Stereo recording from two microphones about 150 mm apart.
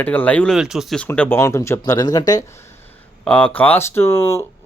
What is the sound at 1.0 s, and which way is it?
Speech, 10° left (ahead or behind).